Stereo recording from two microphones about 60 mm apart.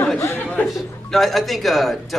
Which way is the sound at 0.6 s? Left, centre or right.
Centre.